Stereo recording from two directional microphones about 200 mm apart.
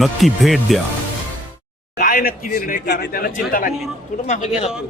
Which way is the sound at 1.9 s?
45° left (ahead or behind).